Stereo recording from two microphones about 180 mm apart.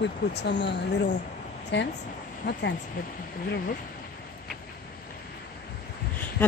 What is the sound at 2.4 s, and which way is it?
Speech, 55° left (ahead or behind).